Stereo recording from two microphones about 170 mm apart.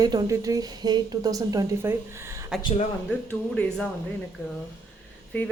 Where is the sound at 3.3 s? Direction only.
10° left (ahead or behind).